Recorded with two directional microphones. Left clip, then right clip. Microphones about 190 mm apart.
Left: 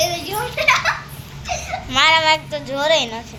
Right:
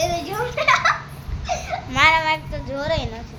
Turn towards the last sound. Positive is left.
turn(degrees=15)  # may be behind; listen again after turning